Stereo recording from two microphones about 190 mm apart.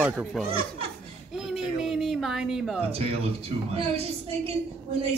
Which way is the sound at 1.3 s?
Centre (ahead or behind).